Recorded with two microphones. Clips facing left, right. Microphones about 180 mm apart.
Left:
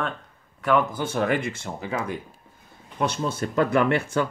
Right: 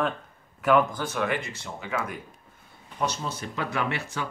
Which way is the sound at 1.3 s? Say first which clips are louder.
Left 5 dB; 50° left (ahead or behind).